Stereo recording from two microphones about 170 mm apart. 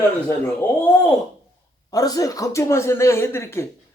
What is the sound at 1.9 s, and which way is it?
Speech, 20° left (ahead or behind).